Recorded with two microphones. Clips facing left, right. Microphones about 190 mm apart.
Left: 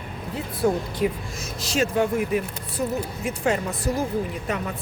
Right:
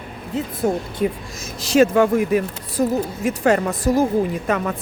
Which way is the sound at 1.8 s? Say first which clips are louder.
Right 8 dB; 65° right (ahead or behind).